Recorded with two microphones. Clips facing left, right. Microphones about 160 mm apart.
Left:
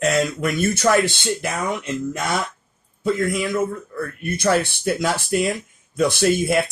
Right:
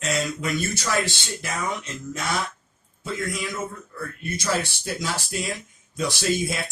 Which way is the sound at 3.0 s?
55° left (ahead or behind).